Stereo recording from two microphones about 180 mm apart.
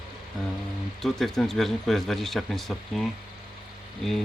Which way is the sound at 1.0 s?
Centre (ahead or behind).